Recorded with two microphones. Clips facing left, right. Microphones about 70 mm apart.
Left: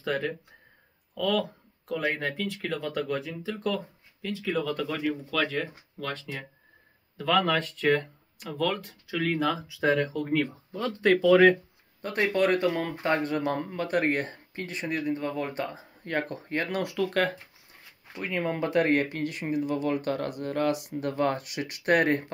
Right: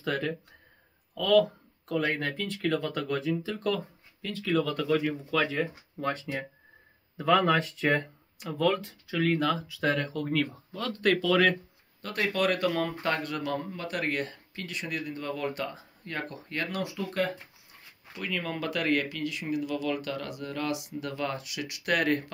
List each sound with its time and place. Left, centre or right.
0.0 s speech: centre
5.3 s speech: centre
5.9 s speech: right; by 13.6 s left
13.6 s speech: left
16.8 s speech: left
18.1 s speech: left